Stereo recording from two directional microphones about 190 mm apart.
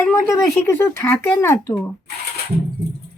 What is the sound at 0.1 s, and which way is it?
Speech, 15° left (ahead or behind).